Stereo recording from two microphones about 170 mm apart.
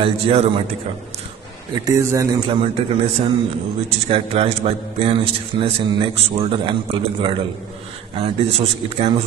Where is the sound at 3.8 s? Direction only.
40° right (ahead or behind).